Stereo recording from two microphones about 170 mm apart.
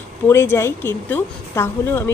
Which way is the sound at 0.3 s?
15° left (ahead or behind).